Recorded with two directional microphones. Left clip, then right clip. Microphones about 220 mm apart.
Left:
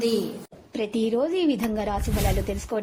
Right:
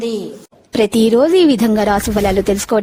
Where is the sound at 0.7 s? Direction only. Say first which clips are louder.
Right 13 dB; 55° right (ahead or behind).